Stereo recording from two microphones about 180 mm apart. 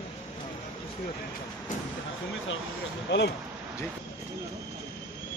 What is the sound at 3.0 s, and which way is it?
Speech, 70° left (ahead or behind).